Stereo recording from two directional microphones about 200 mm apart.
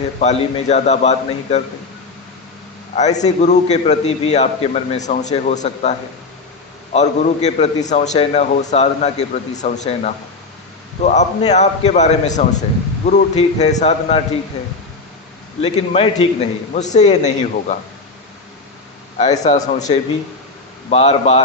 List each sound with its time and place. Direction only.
0.2 s a man's voice: 30° left (ahead or behind)
2.9 s a man's voice: 35° left (ahead or behind)
15.6 s a man's voice: 30° left (ahead or behind)
19.4 s a man's voice: 35° left (ahead or behind)
20.9 s a man's voice: 30° left (ahead or behind)